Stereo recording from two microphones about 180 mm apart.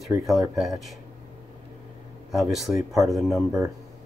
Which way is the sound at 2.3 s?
Centre (ahead or behind).